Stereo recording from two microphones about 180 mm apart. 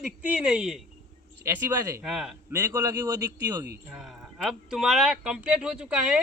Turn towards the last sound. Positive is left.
turn(degrees=-5)  # may be behind; listen again after turning